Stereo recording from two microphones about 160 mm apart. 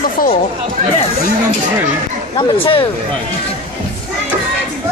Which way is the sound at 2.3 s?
30° left (ahead or behind).